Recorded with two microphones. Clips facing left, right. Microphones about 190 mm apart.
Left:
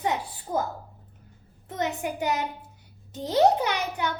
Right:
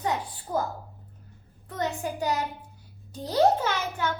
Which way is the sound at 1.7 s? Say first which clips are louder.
Left 1 dB; 20° left (ahead or behind).